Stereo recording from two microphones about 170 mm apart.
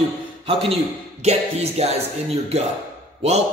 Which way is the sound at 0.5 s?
35° right (ahead or behind).